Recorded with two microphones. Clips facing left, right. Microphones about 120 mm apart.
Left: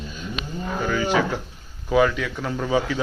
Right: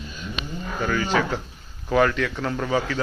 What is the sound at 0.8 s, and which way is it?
Speech, 10° left (ahead or behind).